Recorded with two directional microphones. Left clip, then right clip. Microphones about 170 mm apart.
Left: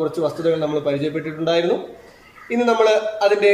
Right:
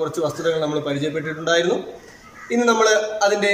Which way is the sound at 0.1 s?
10° left (ahead or behind).